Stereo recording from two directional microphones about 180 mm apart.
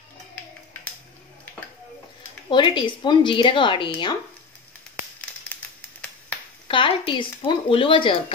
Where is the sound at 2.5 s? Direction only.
25° left (ahead or behind).